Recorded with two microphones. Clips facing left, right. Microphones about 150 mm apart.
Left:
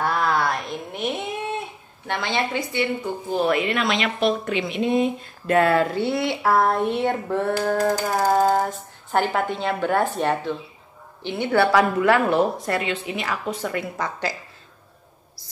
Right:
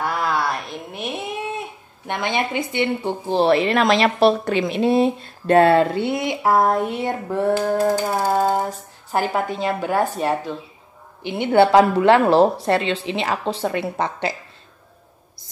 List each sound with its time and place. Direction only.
0.0 s a sound: 5° right (ahead or behind)
2.0 s speech: 20° right (ahead or behind)
11.3 s speech: 25° right (ahead or behind)